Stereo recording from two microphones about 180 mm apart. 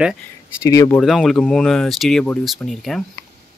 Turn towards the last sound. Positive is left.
turn(degrees=5)  # may be behind; listen again after turning